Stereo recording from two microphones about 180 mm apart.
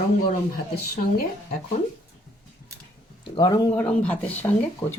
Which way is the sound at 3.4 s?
20° left (ahead or behind).